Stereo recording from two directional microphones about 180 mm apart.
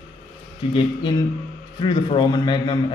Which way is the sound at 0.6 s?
30° left (ahead or behind).